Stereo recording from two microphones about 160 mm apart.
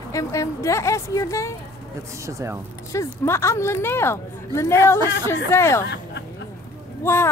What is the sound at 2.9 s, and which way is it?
A woman's voice, 15° left (ahead or behind).